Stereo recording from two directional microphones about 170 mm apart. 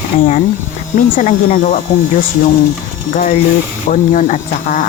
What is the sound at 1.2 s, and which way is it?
Speech, 50° left (ahead or behind).